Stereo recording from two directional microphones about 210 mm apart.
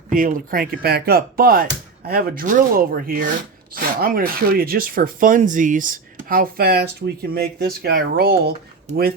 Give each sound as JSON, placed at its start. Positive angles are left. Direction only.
{"t": 0.1, "sound": "speech", "side_deg": -40}